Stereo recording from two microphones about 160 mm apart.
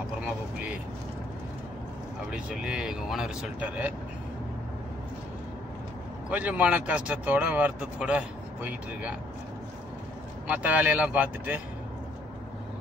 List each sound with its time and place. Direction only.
2.3 s speech: 5° right (ahead or behind)
6.3 s speech: 10° right (ahead or behind)
10.4 s speech: 10° right (ahead or behind)